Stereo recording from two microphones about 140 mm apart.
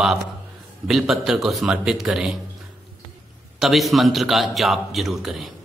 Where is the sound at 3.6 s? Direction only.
Centre (ahead or behind).